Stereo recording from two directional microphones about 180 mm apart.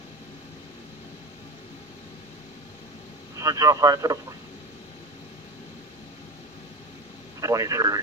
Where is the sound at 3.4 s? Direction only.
20° right (ahead or behind).